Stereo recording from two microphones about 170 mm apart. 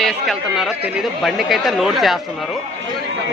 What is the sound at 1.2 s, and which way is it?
Speech, centre (ahead or behind).